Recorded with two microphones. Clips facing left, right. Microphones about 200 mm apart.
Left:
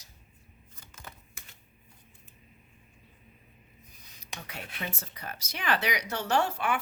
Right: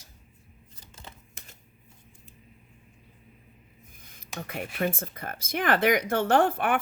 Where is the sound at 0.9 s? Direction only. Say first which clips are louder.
Right 1 dB; 30° right (ahead or behind).